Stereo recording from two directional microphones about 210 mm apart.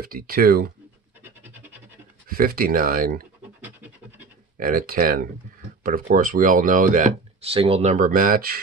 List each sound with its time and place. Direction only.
0.0 s speech: 45° right (ahead or behind)
2.2 s speech: 45° right (ahead or behind)
3.6 s scratch: 10° right (ahead or behind)
4.6 s speech: 40° right (ahead or behind)